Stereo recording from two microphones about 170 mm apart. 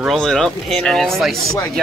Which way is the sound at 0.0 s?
Centre (ahead or behind).